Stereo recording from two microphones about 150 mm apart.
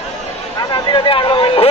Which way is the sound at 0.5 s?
30° left (ahead or behind).